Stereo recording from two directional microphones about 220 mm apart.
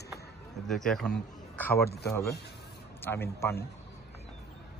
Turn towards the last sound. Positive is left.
turn(degrees=10)  # may be behind; listen again after turning